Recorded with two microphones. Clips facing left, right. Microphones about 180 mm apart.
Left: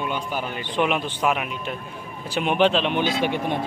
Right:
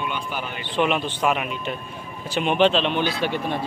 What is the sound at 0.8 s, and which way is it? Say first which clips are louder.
Speech: right 1 dB; 5° left (ahead or behind).